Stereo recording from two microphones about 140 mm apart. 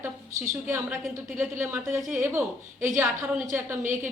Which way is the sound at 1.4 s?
15° right (ahead or behind).